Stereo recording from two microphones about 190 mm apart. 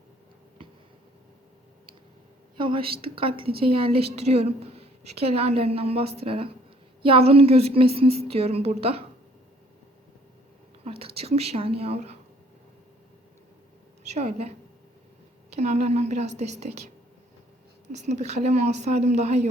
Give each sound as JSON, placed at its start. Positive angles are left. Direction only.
{"t": 2.6, "sound": "a woman's voice", "side_deg": -25}
{"t": 10.8, "sound": "speech", "side_deg": -30}
{"t": 14.1, "sound": "a woman's voice", "side_deg": -35}
{"t": 15.5, "sound": "a woman's voice", "side_deg": -35}
{"t": 17.9, "sound": "a woman's voice", "side_deg": -40}